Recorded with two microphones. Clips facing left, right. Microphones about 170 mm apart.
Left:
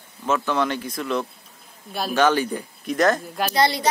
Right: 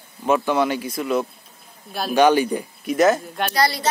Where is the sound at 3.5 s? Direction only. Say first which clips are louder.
Left 1 dB; 20° left (ahead or behind).